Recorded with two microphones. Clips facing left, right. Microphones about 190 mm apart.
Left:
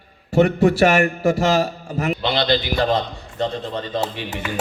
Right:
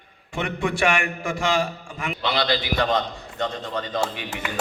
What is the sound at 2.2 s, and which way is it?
A man's voice, 25° left (ahead or behind).